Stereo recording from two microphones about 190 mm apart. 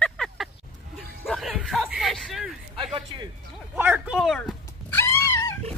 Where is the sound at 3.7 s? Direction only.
10° right (ahead or behind).